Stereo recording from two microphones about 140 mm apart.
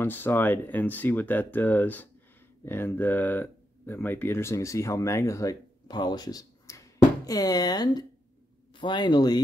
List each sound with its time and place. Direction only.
0.0 s speech: 15° left (ahead or behind); by 9.4 s 30° left (ahead or behind)